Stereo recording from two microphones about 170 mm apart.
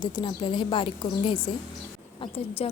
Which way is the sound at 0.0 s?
25° left (ahead or behind).